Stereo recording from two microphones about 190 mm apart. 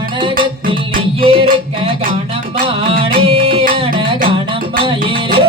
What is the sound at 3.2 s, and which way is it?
Music, 30° right (ahead or behind).